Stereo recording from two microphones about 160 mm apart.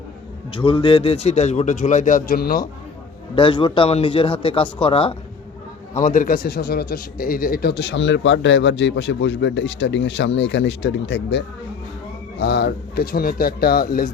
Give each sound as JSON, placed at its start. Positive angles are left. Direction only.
{"t": 0.5, "sound": "a man's voice", "side_deg": 35}
{"t": 3.3, "sound": "a man's voice", "side_deg": 30}
{"t": 6.0, "sound": "a man's voice", "side_deg": 55}